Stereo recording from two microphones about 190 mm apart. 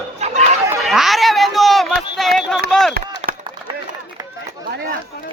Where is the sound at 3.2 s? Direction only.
30° right (ahead or behind).